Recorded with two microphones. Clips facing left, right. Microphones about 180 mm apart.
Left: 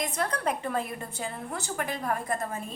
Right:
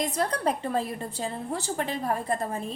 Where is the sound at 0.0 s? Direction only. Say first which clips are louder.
Right 3 dB; 30° right (ahead or behind).